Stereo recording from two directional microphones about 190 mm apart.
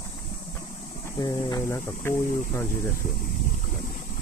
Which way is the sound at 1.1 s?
20° left (ahead or behind).